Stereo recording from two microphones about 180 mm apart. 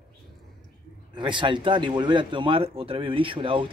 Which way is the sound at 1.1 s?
25° right (ahead or behind).